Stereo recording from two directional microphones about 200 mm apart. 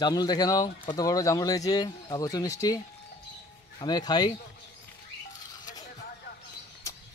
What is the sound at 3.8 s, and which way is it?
Speech, 20° left (ahead or behind).